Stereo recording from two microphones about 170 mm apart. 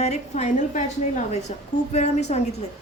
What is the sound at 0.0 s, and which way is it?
A woman's voice, 40° left (ahead or behind).